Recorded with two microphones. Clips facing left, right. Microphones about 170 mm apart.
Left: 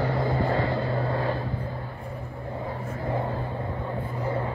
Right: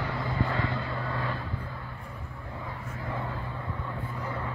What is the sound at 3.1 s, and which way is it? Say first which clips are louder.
Vehicle: left 7 dB; 35° left (ahead or behind).